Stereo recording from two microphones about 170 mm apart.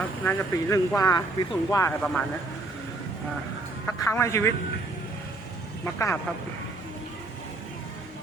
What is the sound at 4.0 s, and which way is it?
Speech, 15° left (ahead or behind).